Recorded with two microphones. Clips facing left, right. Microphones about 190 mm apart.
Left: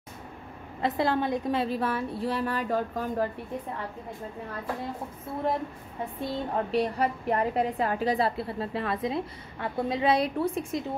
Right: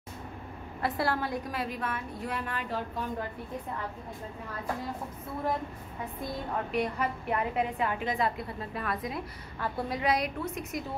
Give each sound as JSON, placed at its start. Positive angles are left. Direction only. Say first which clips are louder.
{"t": 0.7, "sound": "a woman's voice", "louder": "left 4 dB", "side_deg": 20}
{"t": 6.1, "sound": "a woman's voice", "louder": "left 5 dB", "side_deg": 30}